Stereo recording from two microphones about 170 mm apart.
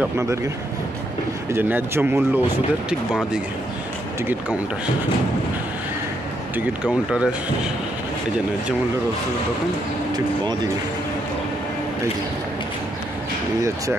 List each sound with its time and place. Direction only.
0.0 s speech: 15° right (ahead or behind)
1.5 s speech: 10° right (ahead or behind)
6.5 s speech: 5° right (ahead or behind)